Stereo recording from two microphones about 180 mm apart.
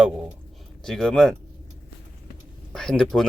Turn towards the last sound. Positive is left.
turn(degrees=5)  # may be behind; listen again after turning